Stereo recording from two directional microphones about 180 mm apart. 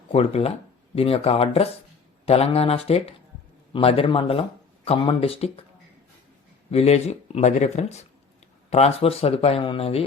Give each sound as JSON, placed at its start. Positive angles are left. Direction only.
{"t": 0.1, "sound": "speech", "side_deg": 35}
{"t": 6.7, "sound": "speech", "side_deg": 35}